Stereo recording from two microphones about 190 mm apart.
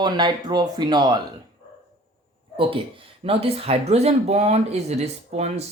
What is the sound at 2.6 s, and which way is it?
Speech, 30° right (ahead or behind).